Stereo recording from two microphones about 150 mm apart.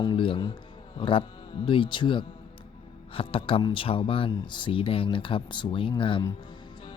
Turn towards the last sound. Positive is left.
turn(degrees=35)  # may be behind; listen again after turning